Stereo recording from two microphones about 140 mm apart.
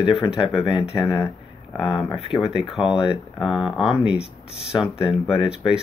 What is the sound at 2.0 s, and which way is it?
Speech, 40° left (ahead or behind).